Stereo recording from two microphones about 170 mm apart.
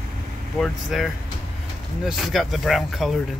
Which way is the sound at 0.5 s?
Centre (ahead or behind).